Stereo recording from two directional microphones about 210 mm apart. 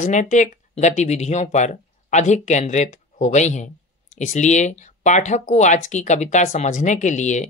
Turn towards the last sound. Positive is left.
turn(degrees=35)  # may be behind; listen again after turning